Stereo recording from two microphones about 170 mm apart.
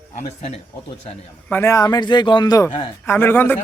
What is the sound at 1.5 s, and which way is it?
Speech, 15° left (ahead or behind).